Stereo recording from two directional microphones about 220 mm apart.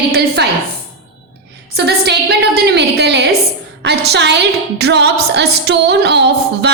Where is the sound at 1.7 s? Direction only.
50° right (ahead or behind).